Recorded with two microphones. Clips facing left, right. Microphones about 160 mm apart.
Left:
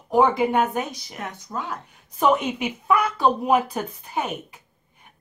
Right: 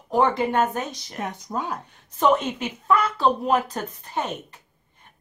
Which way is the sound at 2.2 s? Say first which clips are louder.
Even; 10° left (ahead or behind).